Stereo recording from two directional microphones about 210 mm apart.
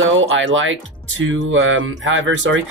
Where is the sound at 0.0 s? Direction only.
65° right (ahead or behind).